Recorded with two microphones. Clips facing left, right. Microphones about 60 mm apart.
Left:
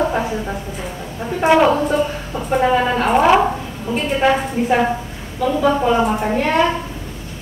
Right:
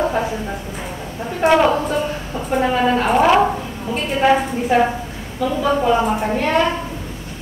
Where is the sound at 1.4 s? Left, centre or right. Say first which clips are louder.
Left 1 dB; centre.